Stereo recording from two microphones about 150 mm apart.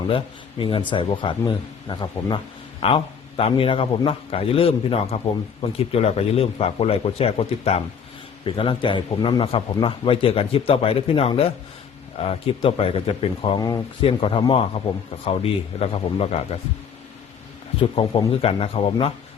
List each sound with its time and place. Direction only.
0.6 s a man's voice: 35° left (ahead or behind)
14.0 s a man's voice: 35° left (ahead or behind)
17.7 s a man's voice: 35° left (ahead or behind)